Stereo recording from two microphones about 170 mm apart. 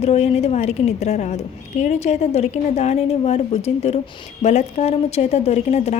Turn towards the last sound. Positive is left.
turn(degrees=40)  # may be behind; listen again after turning